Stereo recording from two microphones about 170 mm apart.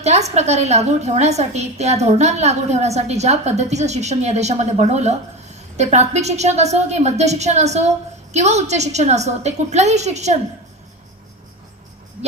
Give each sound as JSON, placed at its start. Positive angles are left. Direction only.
{"t": 0.0, "sound": "a woman's voice", "side_deg": -40}